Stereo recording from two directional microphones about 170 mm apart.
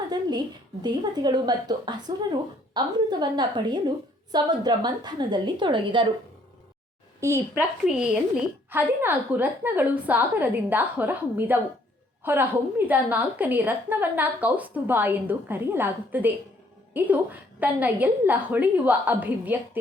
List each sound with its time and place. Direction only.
0.1 s a woman's voice: 25° right (ahead or behind)
7.2 s a woman's voice: 15° right (ahead or behind)
7.9 s a woman's voice: 5° right (ahead or behind)